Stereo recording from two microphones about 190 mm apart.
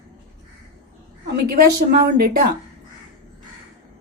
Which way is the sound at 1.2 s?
55° right (ahead or behind).